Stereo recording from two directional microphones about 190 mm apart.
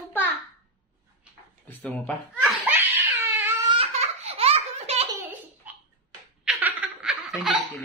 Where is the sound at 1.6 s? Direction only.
10° left (ahead or behind).